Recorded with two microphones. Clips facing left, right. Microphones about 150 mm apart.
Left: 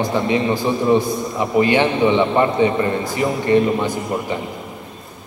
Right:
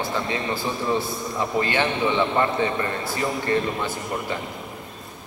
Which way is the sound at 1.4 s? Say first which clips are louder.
Left 7 dB; 15° left (ahead or behind).